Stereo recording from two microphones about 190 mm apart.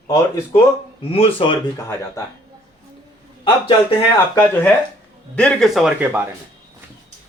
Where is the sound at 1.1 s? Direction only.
30° left (ahead or behind).